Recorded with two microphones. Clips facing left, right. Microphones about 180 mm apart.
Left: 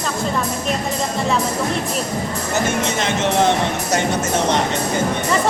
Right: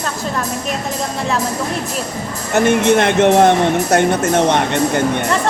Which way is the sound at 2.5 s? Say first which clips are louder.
Right 9 dB; 60° right (ahead or behind).